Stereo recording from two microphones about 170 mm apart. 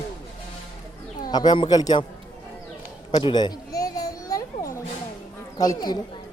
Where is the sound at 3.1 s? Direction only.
30° left (ahead or behind).